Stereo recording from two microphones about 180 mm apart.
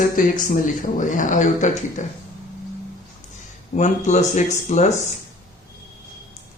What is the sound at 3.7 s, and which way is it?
Speech, 40° left (ahead or behind).